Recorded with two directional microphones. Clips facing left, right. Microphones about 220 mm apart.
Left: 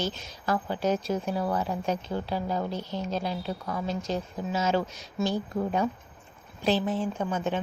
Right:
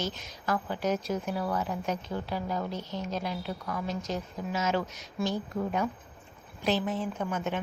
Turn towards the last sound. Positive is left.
turn(degrees=30)  # may be behind; listen again after turning